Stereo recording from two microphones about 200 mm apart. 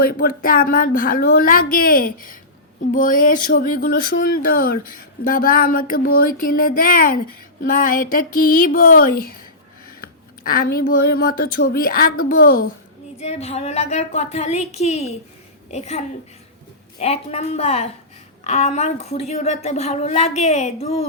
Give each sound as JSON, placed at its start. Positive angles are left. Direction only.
{"t": 0.0, "sound": "a woman's voice", "side_deg": 50}
{"t": 13.1, "sound": "speech", "side_deg": 30}